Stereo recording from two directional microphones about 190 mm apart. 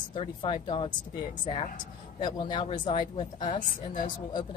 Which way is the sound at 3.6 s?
45° left (ahead or behind).